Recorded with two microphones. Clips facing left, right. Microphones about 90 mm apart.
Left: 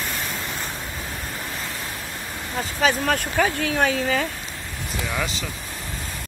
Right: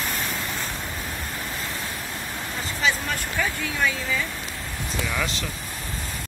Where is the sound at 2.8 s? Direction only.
60° left (ahead or behind).